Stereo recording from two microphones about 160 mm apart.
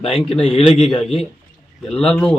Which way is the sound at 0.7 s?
35° left (ahead or behind).